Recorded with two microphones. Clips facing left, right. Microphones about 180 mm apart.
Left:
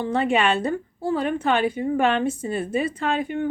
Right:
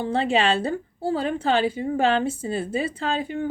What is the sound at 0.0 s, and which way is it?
A woman's voice, 30° right (ahead or behind).